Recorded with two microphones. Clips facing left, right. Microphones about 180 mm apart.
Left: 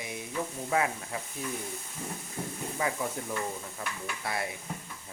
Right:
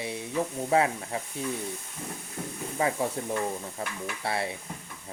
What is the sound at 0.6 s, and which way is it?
Speech, 30° right (ahead or behind).